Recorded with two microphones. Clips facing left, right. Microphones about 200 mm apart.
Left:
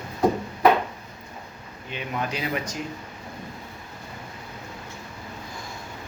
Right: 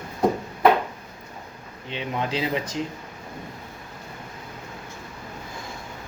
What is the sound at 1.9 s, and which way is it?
Speech, 25° right (ahead or behind).